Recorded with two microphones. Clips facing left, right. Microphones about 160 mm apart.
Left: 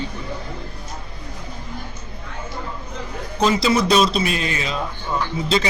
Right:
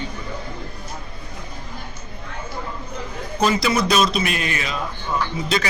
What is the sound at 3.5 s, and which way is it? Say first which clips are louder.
Speech: left 4 dB; 25° left (ahead or behind).